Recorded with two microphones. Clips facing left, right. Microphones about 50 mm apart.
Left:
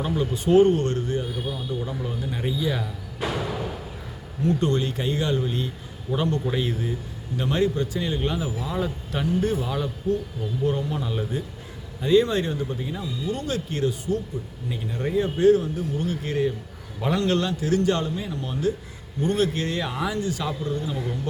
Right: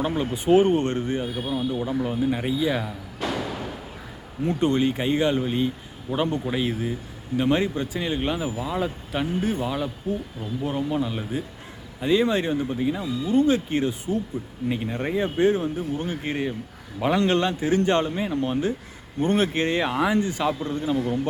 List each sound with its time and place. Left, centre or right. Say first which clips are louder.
0.1 s a man's voice: even; right
0.3 s a man's voice: left 1 dB; centre
3.2 s music: left 1 dB; centre
4.4 s a man's voice: right 1 dB; right
14.7 s a man's voice: right 1 dB; right